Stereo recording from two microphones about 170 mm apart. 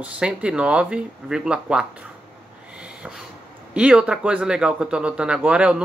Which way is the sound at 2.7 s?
5° right (ahead or behind).